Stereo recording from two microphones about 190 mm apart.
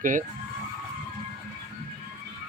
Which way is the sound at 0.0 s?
45° right (ahead or behind).